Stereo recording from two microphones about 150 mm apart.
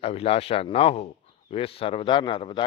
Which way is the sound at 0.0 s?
40° left (ahead or behind).